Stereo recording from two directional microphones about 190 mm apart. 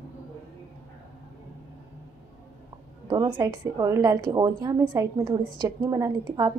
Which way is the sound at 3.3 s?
20° right (ahead or behind).